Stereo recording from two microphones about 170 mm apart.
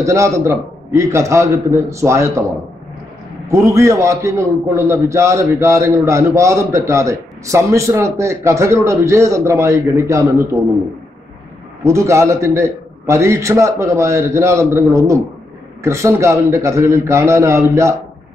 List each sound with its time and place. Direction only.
0.0 s a man's voice: 15° right (ahead or behind)
3.4 s a man's voice: 15° right (ahead or behind)
11.8 s a man's voice: 15° right (ahead or behind)